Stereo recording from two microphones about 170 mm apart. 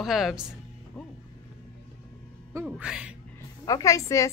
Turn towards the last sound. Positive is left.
turn(degrees=20)  # may be behind; listen again after turning